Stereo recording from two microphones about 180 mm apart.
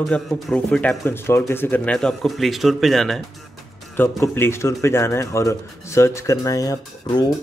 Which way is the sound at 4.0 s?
15° left (ahead or behind).